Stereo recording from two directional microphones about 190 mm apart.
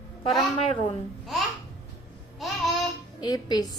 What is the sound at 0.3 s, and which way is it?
Speech, 30° left (ahead or behind).